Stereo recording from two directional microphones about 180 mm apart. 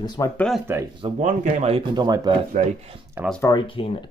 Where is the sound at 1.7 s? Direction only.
25° right (ahead or behind).